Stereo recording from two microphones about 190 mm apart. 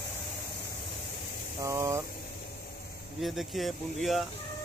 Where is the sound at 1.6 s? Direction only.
15° right (ahead or behind).